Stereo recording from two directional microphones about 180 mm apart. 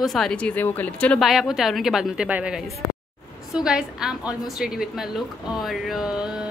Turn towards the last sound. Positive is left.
turn(degrees=0)  # may be behind; listen again after turning